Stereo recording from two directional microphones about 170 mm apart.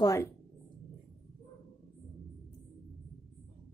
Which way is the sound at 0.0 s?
20° left (ahead or behind).